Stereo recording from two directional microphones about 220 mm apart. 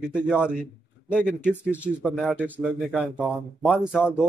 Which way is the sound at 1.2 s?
10° left (ahead or behind).